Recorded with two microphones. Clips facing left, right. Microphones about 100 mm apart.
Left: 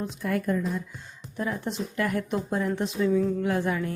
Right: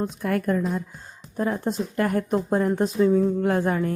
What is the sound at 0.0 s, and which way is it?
Speech, 50° right (ahead or behind).